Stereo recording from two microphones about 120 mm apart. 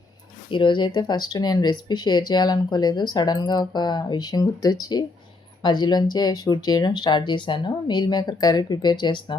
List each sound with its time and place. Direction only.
0.5 s speech: 40° left (ahead or behind)